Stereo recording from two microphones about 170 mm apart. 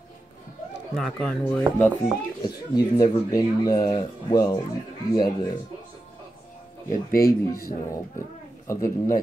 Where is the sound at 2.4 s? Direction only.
25° left (ahead or behind).